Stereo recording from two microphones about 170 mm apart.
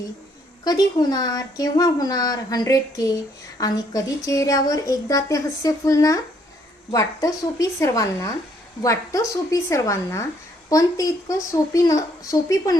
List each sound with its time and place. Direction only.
0.6 s speech: 25° left (ahead or behind)